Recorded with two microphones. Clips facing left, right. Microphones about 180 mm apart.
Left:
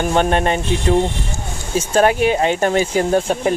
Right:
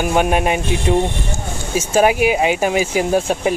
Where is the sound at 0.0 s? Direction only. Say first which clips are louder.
Even; 10° right (ahead or behind).